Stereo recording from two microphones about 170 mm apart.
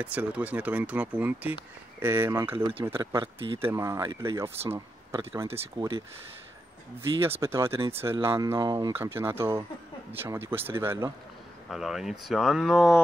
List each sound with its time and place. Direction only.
0.0 s speech: 10° right (ahead or behind)
2.5 s speech: 30° right (ahead or behind)
2.8 s speech: 15° right (ahead or behind)
3.2 s speech: 30° right (ahead or behind)
3.6 s speech: 15° right (ahead or behind)
7.0 s speech: 15° right (ahead or behind)
11.7 s speech: centre (ahead or behind)